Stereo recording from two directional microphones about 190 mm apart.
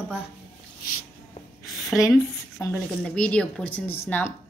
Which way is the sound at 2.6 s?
15° left (ahead or behind).